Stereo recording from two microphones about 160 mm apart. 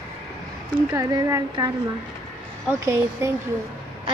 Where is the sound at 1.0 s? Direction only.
20° right (ahead or behind).